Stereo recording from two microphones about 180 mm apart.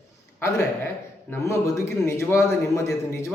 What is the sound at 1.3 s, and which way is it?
Speech, 15° left (ahead or behind).